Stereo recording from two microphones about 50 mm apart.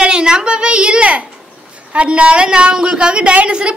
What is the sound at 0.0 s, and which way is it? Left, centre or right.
A woman's voice, centre.